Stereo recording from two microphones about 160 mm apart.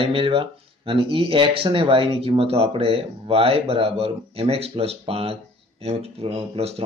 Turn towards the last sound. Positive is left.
turn(degrees=-40)  # may be behind; listen again after turning